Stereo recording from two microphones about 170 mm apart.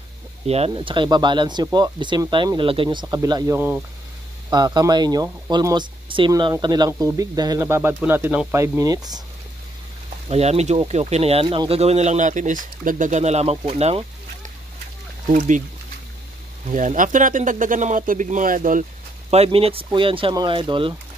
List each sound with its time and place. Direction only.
0.5 s speech: 35° right (ahead or behind)
10.2 s speech: 40° right (ahead or behind)
16.6 s speech: 50° right (ahead or behind)
19.3 s speech: 35° right (ahead or behind)